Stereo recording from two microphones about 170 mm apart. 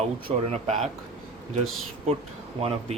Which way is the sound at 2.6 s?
35° right (ahead or behind).